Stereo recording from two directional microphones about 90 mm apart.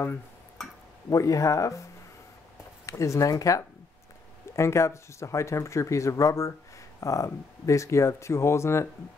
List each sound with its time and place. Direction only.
1.1 s speech: 40° left (ahead or behind)
2.9 s speech: 35° left (ahead or behind)